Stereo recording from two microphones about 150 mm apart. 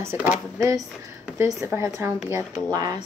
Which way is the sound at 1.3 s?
15° right (ahead or behind).